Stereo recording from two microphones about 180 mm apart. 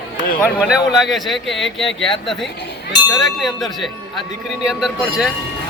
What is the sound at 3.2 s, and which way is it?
Speech, centre (ahead or behind).